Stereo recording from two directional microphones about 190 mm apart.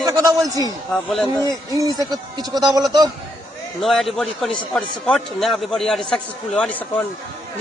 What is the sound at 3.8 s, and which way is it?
A man's voice, centre (ahead or behind).